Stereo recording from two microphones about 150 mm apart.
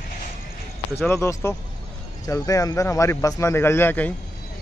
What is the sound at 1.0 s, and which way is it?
A man's voice, 15° left (ahead or behind).